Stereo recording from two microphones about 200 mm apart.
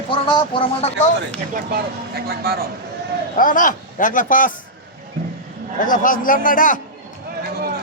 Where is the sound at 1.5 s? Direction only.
50° right (ahead or behind).